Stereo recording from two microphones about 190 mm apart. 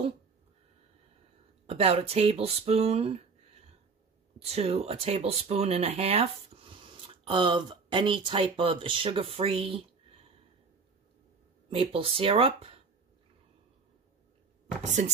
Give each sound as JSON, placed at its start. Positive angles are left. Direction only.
{"t": 1.7, "sound": "speech", "side_deg": -30}
{"t": 4.4, "sound": "speech", "side_deg": -30}
{"t": 11.7, "sound": "speech", "side_deg": -30}
{"t": 14.8, "sound": "speech", "side_deg": -40}